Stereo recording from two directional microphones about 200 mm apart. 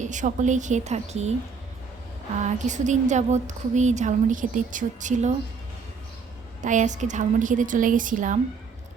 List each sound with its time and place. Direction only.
0.0 s speech: 40° right (ahead or behind)
2.4 s speech: 35° right (ahead or behind)
6.6 s speech: 40° right (ahead or behind)